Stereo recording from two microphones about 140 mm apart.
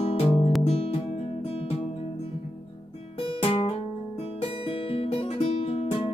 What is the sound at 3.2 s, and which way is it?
Music, 40° left (ahead or behind).